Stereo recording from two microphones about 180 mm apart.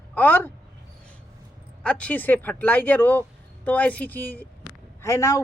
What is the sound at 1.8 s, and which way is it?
A man's voice, 5° left (ahead or behind).